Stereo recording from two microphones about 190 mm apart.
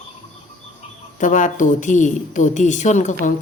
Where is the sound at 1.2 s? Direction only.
40° left (ahead or behind).